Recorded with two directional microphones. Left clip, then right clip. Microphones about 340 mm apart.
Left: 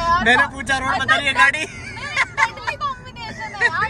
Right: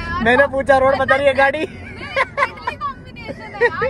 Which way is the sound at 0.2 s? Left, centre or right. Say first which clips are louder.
Right 2 dB; centre.